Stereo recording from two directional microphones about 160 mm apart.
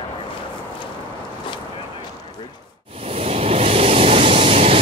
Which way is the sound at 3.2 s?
40° right (ahead or behind).